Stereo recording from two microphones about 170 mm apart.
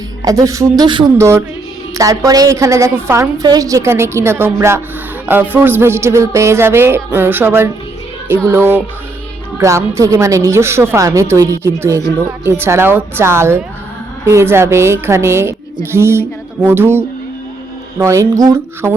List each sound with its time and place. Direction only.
0.3 s a woman's voice: 20° right (ahead or behind)
18.0 s a woman's voice: 15° right (ahead or behind)